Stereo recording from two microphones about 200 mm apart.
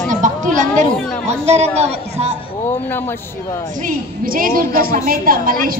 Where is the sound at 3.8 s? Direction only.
45° right (ahead or behind).